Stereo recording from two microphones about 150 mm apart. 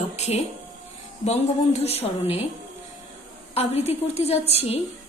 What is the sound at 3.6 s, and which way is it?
A woman's voice, 45° left (ahead or behind).